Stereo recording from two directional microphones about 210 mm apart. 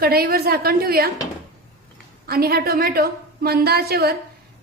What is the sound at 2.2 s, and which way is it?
A woman's voice, 45° right (ahead or behind).